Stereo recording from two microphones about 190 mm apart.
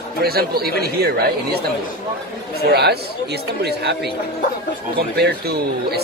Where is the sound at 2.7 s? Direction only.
60° right (ahead or behind).